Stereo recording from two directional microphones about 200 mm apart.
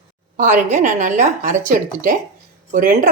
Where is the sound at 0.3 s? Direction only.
40° right (ahead or behind).